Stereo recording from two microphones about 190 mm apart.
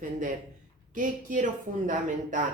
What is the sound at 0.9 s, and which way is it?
A woman's voice, 45° right (ahead or behind).